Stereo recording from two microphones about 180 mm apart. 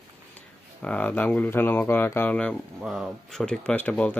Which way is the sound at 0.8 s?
10° left (ahead or behind).